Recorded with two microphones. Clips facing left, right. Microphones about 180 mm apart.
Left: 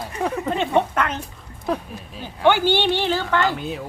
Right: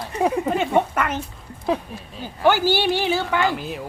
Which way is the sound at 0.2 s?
15° right (ahead or behind).